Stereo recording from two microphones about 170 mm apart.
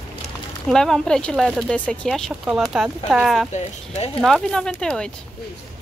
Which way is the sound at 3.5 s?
40° left (ahead or behind).